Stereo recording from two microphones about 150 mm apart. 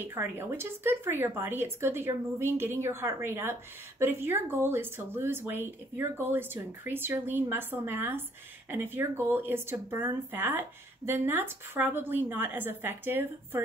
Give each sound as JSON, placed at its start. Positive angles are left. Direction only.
{"t": 0.0, "sound": "speech", "side_deg": -15}